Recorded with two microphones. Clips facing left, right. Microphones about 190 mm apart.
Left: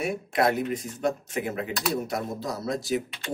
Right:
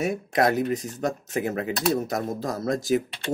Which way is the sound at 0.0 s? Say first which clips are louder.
Right 2 dB; 45° right (ahead or behind).